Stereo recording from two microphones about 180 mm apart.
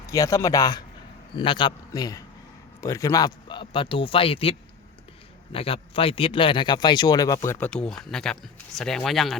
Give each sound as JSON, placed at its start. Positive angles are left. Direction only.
{"t": 0.1, "sound": "a man's voice", "side_deg": 20}
{"t": 7.7, "sound": "speech", "side_deg": 5}